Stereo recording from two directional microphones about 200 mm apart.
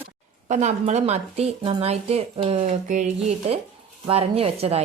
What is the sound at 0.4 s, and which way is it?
Speech, 35° right (ahead or behind).